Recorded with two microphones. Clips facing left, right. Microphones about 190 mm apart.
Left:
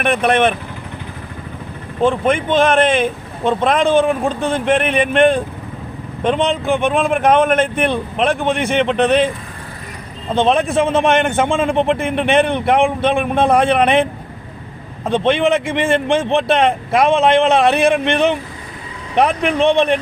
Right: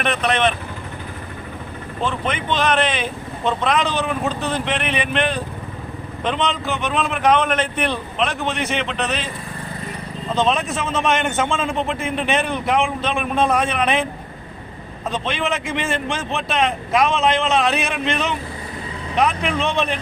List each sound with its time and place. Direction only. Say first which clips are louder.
0.0 s speech: left 5 dB; 50° left (ahead or behind)
2.0 s speech: left 8 dB; 50° left (ahead or behind)
10.3 s a man's voice: left 6 dB; 55° left (ahead or behind)
15.1 s a man's voice: left 10 dB; 60° left (ahead or behind)